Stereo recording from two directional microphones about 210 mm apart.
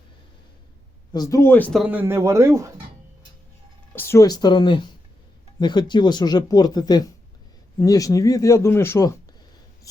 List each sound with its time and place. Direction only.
1.1 s speech: 15° left (ahead or behind)
1.8 s speech: 10° right (ahead or behind)
3.9 s speech: 10° left (ahead or behind)